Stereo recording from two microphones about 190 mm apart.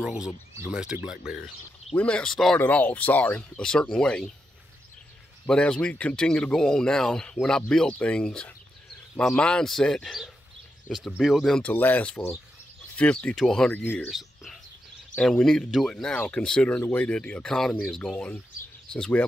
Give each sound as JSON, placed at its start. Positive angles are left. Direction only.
{"t": 0.0, "sound": "speech", "side_deg": -5}
{"t": 5.5, "sound": "speech", "side_deg": 5}